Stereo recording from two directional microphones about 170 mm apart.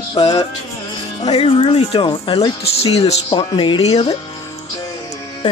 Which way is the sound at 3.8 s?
40° left (ahead or behind).